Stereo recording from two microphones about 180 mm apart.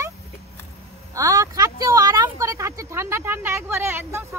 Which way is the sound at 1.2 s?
20° right (ahead or behind).